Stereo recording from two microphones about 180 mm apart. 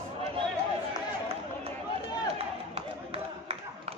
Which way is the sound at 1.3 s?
35° right (ahead or behind).